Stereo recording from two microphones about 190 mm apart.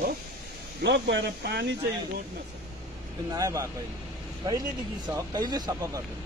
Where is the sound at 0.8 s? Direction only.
65° right (ahead or behind).